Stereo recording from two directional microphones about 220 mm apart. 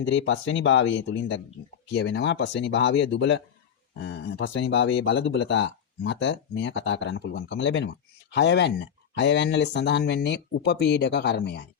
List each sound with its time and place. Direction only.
0.0 s speech: 60° left (ahead or behind)